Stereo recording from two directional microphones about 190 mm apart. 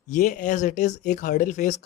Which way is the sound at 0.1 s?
40° left (ahead or behind).